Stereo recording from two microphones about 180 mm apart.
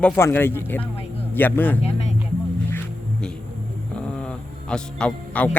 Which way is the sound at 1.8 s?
35° left (ahead or behind).